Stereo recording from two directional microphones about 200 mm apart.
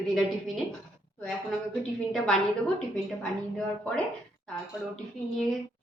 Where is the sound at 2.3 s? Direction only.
5° left (ahead or behind).